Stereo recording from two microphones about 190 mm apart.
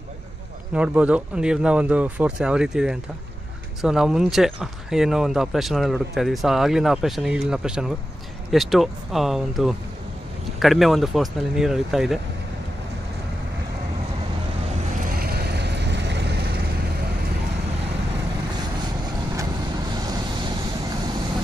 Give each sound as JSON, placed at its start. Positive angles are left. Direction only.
{"t": 0.7, "sound": "speech", "side_deg": -5}
{"t": 15.1, "sound": "vehicle", "side_deg": -55}
{"t": 19.9, "sound": "vehicle", "side_deg": -20}